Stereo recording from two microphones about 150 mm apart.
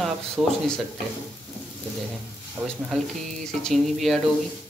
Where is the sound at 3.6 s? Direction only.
Centre (ahead or behind).